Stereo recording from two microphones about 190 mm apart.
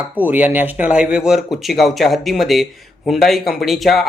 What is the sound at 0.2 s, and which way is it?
A man's voice, 10° right (ahead or behind).